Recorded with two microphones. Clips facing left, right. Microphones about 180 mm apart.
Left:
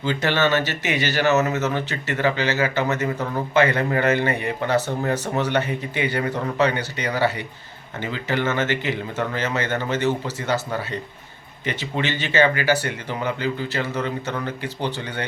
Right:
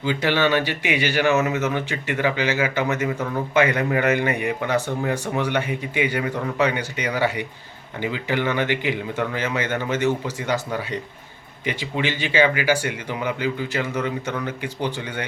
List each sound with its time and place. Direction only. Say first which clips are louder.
0.0 s speech: even; 10° right (ahead or behind)